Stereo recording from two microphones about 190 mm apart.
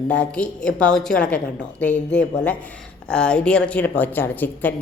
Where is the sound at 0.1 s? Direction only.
5° left (ahead or behind).